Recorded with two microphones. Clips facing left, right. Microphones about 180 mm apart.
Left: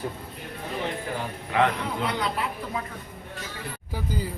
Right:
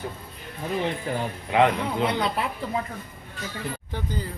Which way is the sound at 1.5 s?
20° right (ahead or behind).